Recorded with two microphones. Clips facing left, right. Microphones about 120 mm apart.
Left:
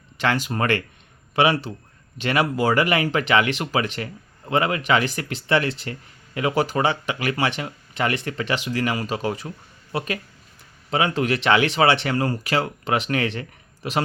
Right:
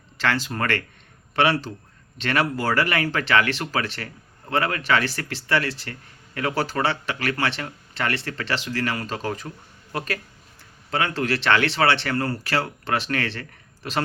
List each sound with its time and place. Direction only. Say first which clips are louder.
0.2 s speech: left 2 dB; 15° left (ahead or behind)